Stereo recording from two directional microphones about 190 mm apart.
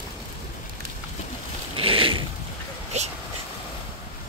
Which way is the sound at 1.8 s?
30° right (ahead or behind).